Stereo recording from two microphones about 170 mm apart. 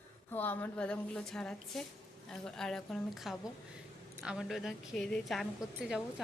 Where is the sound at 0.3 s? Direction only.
10° left (ahead or behind).